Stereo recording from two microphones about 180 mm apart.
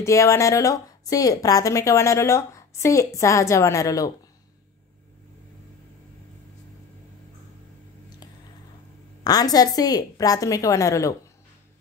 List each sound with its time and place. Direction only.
0.0 s speech: 15° left (ahead or behind)
9.2 s a woman's voice: 20° left (ahead or behind)